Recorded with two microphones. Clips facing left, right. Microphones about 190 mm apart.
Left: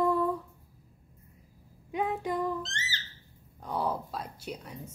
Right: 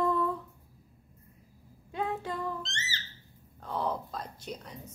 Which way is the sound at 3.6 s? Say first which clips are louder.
Left 1 dB; 10° left (ahead or behind).